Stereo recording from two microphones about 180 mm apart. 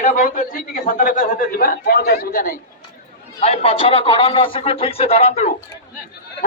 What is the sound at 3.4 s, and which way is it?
A man's voice, 35° left (ahead or behind).